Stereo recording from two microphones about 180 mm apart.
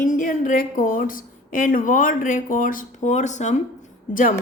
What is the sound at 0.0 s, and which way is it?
A woman's voice, 45° left (ahead or behind).